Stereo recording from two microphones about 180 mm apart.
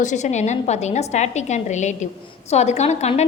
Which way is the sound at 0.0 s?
40° left (ahead or behind).